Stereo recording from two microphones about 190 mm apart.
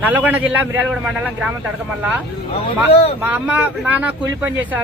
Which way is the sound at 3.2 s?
10° right (ahead or behind).